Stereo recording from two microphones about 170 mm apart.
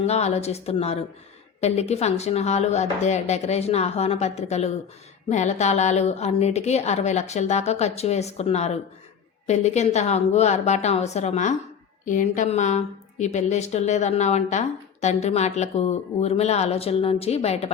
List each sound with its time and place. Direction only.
0.0 s a woman's voice: 40° left (ahead or behind)